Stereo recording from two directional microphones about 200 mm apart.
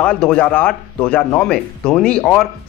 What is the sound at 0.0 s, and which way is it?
Speech, 5° left (ahead or behind).